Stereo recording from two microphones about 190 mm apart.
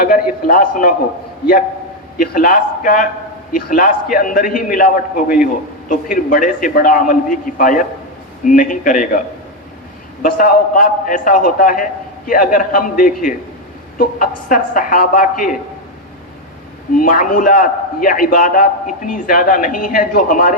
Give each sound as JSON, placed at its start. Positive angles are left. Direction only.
{"t": 0.4, "sound": "a man's voice", "side_deg": 45}
{"t": 2.1, "sound": "a man's voice", "side_deg": 50}
{"t": 10.2, "sound": "a man's voice", "side_deg": 45}
{"t": 17.0, "sound": "a man's voice", "side_deg": 45}